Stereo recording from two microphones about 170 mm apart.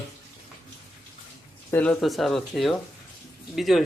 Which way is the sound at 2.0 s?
Centre (ahead or behind).